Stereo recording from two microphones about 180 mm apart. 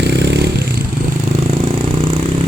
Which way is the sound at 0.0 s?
70° right (ahead or behind).